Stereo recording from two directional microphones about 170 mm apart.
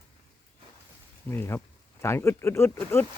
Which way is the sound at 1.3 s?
15° left (ahead or behind).